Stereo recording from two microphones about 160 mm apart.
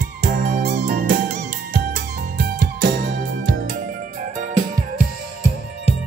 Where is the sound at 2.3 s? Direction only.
60° right (ahead or behind).